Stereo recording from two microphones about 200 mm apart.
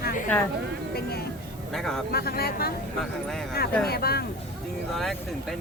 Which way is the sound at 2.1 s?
50° left (ahead or behind).